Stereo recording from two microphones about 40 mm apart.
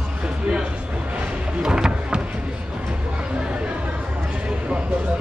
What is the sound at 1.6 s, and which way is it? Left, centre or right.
Music, centre.